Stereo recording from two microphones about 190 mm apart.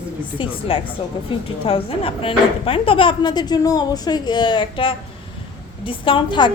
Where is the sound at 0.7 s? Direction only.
30° left (ahead or behind).